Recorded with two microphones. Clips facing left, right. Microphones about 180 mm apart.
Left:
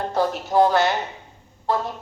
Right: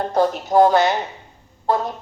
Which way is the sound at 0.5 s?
50° right (ahead or behind).